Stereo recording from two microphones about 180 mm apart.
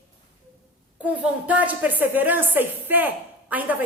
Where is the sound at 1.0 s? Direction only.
10° right (ahead or behind).